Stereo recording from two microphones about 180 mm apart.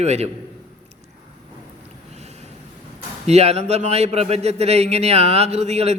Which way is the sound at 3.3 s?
35° right (ahead or behind).